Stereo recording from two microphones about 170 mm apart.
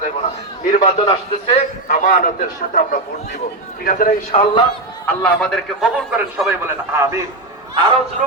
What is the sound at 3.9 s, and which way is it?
Speech, 55° left (ahead or behind).